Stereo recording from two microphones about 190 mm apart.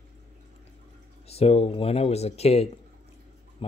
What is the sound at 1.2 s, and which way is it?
Speech, 35° left (ahead or behind).